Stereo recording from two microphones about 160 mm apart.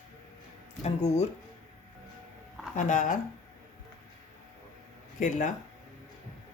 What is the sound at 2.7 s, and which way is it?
Speech, 50° left (ahead or behind).